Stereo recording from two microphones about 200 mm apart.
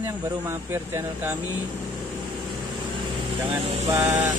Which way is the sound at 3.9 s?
15° right (ahead or behind).